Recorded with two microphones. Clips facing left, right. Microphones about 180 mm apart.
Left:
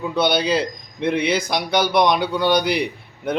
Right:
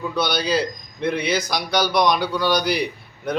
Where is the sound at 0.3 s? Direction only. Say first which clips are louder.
Left 2 dB; 55° left (ahead or behind).